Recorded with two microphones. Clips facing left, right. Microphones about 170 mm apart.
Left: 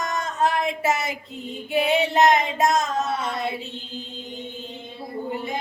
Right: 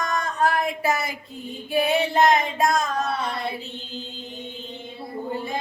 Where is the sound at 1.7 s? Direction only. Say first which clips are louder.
Even; 20° left (ahead or behind).